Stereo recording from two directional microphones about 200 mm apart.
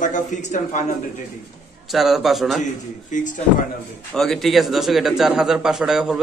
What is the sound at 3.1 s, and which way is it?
Speech, 40° left (ahead or behind).